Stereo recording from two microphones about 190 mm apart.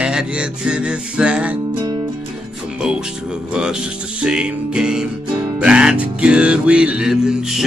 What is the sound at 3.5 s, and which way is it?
Music, 5° right (ahead or behind).